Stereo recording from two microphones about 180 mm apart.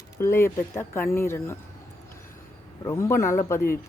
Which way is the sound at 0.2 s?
15° left (ahead or behind).